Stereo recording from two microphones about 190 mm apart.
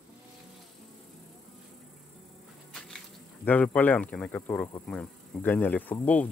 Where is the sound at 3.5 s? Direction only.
10° left (ahead or behind).